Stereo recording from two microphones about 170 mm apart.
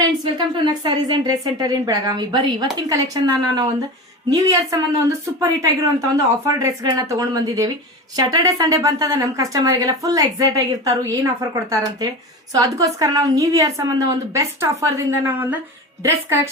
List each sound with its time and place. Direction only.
0.0 s a woman's voice: 25° right (ahead or behind)
4.3 s a woman's voice: 20° right (ahead or behind)